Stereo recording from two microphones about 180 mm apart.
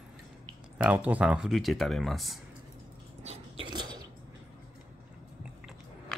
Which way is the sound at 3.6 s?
25° right (ahead or behind).